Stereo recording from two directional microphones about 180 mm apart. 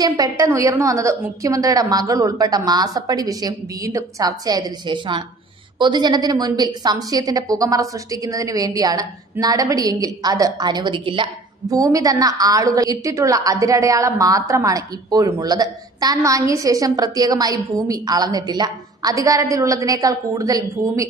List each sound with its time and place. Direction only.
0.0 s a woman's voice: 20° right (ahead or behind)